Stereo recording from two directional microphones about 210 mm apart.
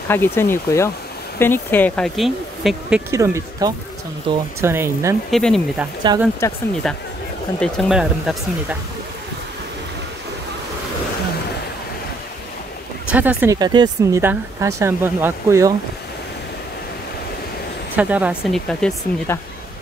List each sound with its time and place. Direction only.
0.1 s speech: 10° left (ahead or behind)
3.1 s speech: 15° right (ahead or behind)
5.3 s speech: centre (ahead or behind)
6.1 s speech: 20° right (ahead or behind)
7.6 s speech: centre (ahead or behind)
13.1 s speech: 5° right (ahead or behind)
17.9 s speech: 5° right (ahead or behind)